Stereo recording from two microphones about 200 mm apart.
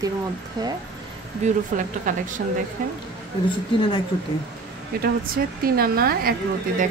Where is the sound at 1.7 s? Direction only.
40° right (ahead or behind).